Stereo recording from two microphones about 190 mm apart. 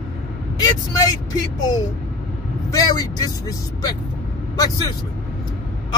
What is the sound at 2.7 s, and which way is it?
Speech, 20° left (ahead or behind).